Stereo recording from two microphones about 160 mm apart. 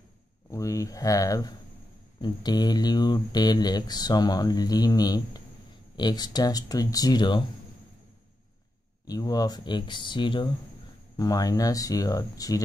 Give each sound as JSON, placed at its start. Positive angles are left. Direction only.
{"t": 0.5, "sound": "speech", "side_deg": 20}
{"t": 9.0, "sound": "speech", "side_deg": 25}